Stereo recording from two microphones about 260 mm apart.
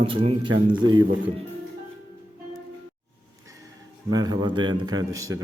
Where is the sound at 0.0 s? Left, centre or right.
Right.